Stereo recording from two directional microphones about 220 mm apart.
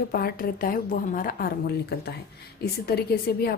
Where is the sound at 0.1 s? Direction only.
40° left (ahead or behind).